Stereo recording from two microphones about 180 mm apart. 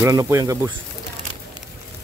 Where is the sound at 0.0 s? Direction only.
20° right (ahead or behind).